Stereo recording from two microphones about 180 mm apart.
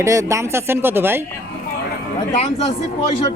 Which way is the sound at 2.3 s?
35° left (ahead or behind).